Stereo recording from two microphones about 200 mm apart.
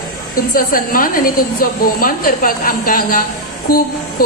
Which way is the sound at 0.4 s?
45° left (ahead or behind).